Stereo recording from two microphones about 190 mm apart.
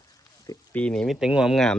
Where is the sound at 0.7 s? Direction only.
5° left (ahead or behind).